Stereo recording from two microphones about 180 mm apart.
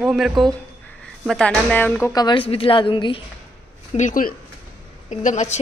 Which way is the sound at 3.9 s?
45° left (ahead or behind).